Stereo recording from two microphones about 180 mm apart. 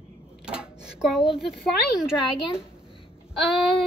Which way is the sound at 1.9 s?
5° right (ahead or behind).